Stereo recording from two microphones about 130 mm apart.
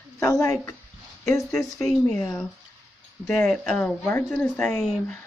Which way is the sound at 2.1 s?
10° left (ahead or behind).